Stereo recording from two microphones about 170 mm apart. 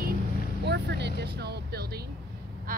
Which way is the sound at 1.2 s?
75° right (ahead or behind).